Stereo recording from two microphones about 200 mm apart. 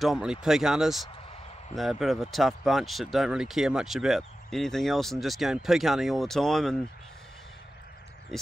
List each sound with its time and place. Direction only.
0.0 s speech: centre (ahead or behind)
8.3 s speech: centre (ahead or behind)